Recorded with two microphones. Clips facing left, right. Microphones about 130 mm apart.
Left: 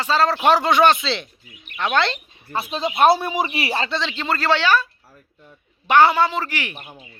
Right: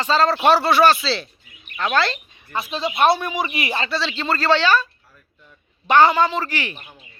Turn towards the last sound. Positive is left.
turn(degrees=15)  # may be behind; listen again after turning